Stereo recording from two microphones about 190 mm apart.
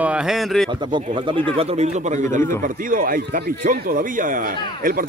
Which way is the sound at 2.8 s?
45° right (ahead or behind).